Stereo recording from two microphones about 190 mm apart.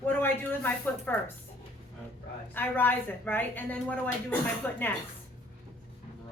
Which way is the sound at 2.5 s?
10° left (ahead or behind).